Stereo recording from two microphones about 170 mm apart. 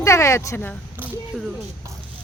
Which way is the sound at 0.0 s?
15° left (ahead or behind).